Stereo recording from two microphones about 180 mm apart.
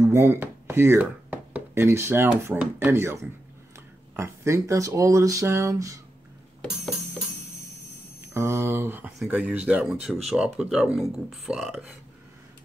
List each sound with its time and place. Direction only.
0.0 s speech: 15° right (ahead or behind)
4.2 s speech: 15° right (ahead or behind)
8.3 s speech: 15° right (ahead or behind)